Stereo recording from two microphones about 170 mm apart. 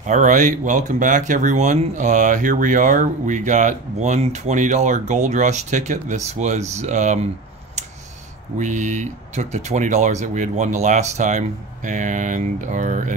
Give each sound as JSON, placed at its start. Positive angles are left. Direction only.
{"t": 0.0, "sound": "speech", "side_deg": -45}
{"t": 8.5, "sound": "speech", "side_deg": -45}